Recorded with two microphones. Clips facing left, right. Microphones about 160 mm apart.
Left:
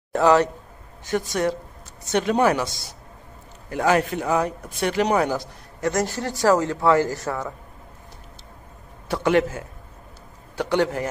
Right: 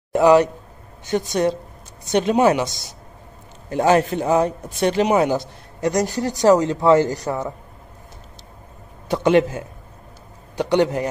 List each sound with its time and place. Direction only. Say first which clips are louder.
0.1 s a man's voice: right 4 dB; 15° right (ahead or behind)
3.7 s speech: right 4 dB; 25° right (ahead or behind)
9.1 s a man's voice: right 4 dB; 20° right (ahead or behind)